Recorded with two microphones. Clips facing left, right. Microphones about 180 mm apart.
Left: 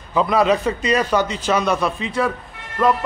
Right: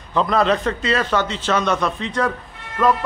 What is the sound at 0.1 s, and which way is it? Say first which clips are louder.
A man's voice: left 1 dB; 10° left (ahead or behind).